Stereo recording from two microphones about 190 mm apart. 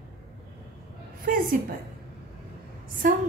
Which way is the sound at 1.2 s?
45° right (ahead or behind).